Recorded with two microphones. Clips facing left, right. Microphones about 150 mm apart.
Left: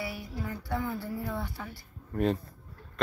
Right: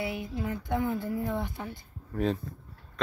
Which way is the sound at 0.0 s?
20° right (ahead or behind).